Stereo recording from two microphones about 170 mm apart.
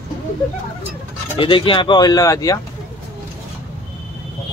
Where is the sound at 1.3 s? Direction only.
30° left (ahead or behind).